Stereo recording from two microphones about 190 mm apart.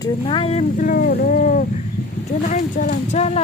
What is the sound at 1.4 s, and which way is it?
Speech, 40° left (ahead or behind).